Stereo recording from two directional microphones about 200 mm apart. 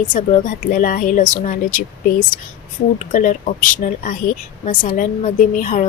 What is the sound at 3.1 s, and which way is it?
Speech, 40° left (ahead or behind).